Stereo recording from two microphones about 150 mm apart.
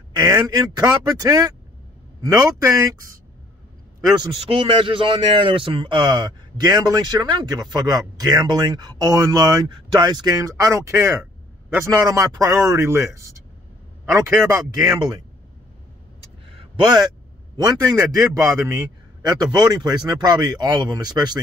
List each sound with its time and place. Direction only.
0.1 s a man's voice: 25° right (ahead or behind)
4.5 s a man's voice: 35° right (ahead or behind)
16.4 s a sound: 35° right (ahead or behind)
18.1 s a man's voice: 20° right (ahead or behind)